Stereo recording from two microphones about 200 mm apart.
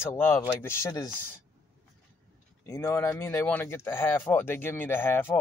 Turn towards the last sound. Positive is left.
turn(degrees=10)  # may be behind; listen again after turning